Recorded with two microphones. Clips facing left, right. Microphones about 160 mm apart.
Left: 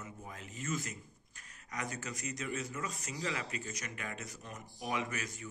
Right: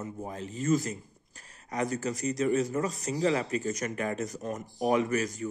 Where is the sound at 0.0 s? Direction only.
35° right (ahead or behind).